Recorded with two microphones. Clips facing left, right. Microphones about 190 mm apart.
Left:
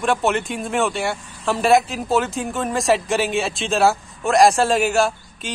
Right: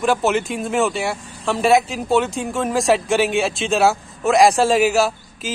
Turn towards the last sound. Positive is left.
turn(degrees=0)  # may be behind; listen again after turning